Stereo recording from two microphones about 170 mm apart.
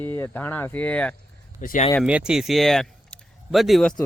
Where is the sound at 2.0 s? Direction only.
5° right (ahead or behind).